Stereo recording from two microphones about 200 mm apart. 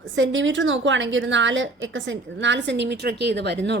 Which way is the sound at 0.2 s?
65° right (ahead or behind).